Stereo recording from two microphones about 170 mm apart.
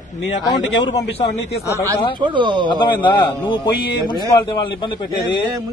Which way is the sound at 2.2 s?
30° right (ahead or behind).